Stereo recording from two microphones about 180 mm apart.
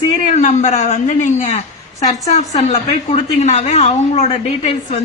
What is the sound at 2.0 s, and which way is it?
Speech, 40° left (ahead or behind).